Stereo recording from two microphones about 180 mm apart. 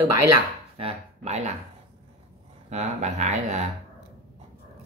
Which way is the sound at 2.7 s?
40° right (ahead or behind).